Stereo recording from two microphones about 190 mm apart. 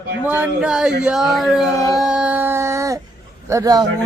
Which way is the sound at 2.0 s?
5° right (ahead or behind).